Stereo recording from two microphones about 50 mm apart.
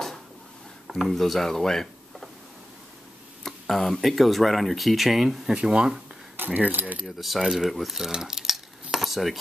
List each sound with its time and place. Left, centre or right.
0.8 s speech: centre
3.4 s speech: centre
5.5 s speech: centre
6.3 s speech: right
7.1 s speech: centre
7.7 s dishes: centre